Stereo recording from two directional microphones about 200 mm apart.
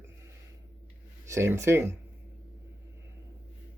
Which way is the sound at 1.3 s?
15° right (ahead or behind).